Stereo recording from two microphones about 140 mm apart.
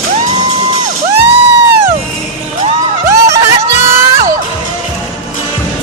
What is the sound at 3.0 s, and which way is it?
Music, 20° right (ahead or behind).